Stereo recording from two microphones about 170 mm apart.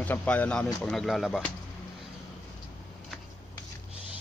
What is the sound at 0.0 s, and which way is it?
Speech, 10° left (ahead or behind).